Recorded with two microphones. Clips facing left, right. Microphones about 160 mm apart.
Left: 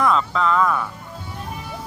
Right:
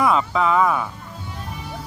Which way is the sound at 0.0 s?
10° right (ahead or behind).